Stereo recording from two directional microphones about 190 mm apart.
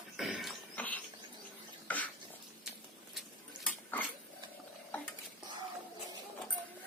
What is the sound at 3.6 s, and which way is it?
Dog, 10° left (ahead or behind).